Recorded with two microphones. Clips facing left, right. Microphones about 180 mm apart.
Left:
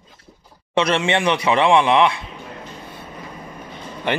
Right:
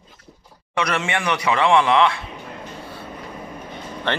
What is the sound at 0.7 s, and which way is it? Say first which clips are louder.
Speech: left 5 dB; 25° left (ahead or behind).